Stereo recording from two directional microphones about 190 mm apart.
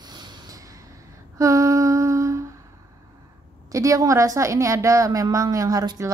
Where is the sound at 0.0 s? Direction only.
20° right (ahead or behind).